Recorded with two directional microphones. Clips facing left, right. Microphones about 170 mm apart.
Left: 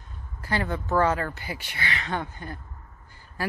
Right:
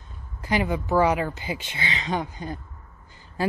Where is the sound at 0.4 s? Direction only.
15° right (ahead or behind).